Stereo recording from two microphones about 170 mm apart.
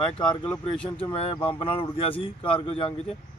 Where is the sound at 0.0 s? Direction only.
5° left (ahead or behind).